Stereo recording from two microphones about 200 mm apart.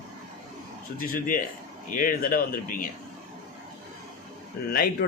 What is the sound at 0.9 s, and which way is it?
A man's voice, 45° left (ahead or behind).